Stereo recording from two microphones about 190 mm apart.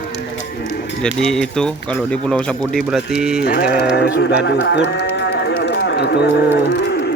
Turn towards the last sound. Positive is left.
turn(degrees=60)  # may be behind; listen again after turning